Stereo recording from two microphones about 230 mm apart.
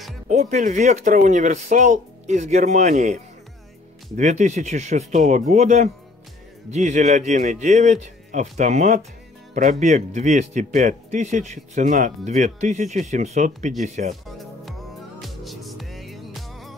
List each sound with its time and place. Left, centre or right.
0.3 s speech: right
4.2 s speech: right
14.4 s music: centre